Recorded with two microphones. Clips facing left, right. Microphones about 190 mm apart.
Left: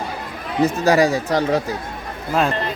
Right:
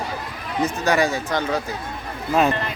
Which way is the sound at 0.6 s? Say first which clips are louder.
Left 5 dB; 35° left (ahead or behind).